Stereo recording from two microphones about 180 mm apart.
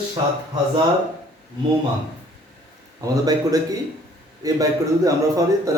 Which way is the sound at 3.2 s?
20° right (ahead or behind).